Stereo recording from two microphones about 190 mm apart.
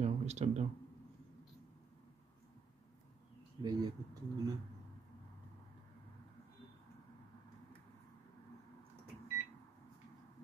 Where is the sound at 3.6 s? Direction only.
20° right (ahead or behind).